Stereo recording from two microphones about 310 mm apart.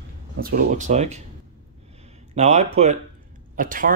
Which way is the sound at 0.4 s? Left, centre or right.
Right.